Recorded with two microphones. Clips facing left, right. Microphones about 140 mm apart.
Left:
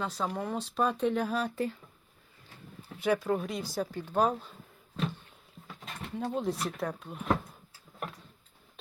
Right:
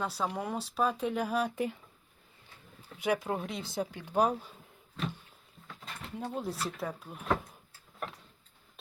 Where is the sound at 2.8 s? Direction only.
15° right (ahead or behind).